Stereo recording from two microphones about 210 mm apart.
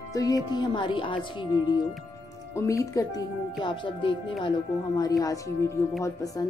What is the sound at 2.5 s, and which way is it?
Speech, 15° left (ahead or behind).